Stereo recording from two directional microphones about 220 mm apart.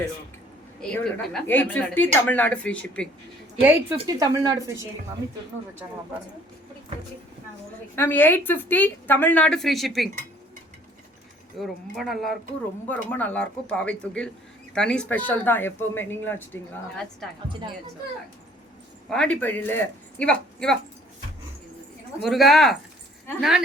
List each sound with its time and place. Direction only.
0.8 s a woman's voice: 5° left (ahead or behind)
3.6 s speech: 10° right (ahead or behind)
7.9 s a woman's voice: 10° left (ahead or behind)
11.6 s a woman's voice: centre (ahead or behind)
19.1 s speech: 5° left (ahead or behind)
22.2 s speech: centre (ahead or behind)